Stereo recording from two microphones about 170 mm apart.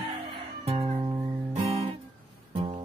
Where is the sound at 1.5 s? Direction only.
40° right (ahead or behind).